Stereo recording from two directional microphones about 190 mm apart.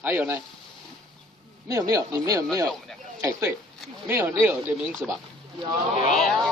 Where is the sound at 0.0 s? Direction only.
10° right (ahead or behind).